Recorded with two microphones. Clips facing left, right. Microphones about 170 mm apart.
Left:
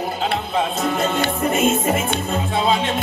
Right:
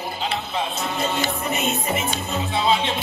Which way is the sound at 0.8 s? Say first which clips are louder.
Left 4 dB; 50° left (ahead or behind).